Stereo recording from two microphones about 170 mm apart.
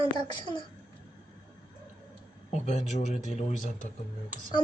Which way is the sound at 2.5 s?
45° left (ahead or behind).